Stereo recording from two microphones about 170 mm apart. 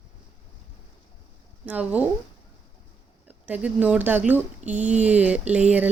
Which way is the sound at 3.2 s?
10° right (ahead or behind).